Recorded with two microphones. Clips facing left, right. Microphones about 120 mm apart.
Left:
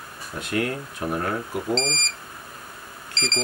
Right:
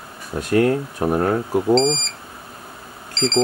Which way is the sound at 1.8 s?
Centre (ahead or behind).